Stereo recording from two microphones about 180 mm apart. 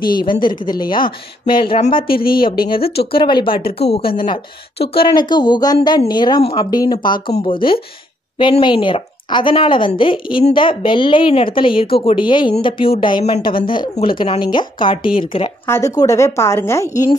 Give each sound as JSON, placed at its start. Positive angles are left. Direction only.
{"t": 0.2, "sound": "a woman's voice", "side_deg": 25}
{"t": 2.0, "sound": "a woman's voice", "side_deg": 55}
{"t": 3.1, "sound": "a woman's voice", "side_deg": 25}
{"t": 15.6, "sound": "a woman's voice", "side_deg": 15}